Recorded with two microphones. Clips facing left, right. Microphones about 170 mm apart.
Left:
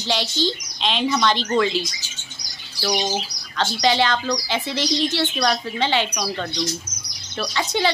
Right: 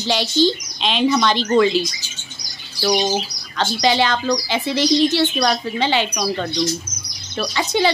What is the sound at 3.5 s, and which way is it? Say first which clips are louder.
Speech: right 2 dB; 5° right (ahead or behind).